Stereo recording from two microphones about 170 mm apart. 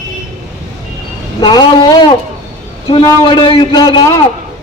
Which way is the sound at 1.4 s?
25° left (ahead or behind).